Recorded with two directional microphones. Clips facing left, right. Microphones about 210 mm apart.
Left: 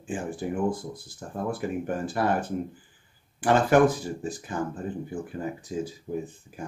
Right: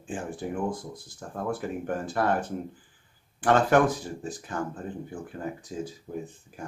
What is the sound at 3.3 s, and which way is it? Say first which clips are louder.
Speech: left 1 dB; 5° left (ahead or behind).